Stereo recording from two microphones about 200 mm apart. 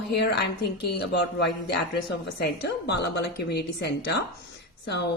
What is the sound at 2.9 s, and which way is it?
A woman's voice, 60° left (ahead or behind).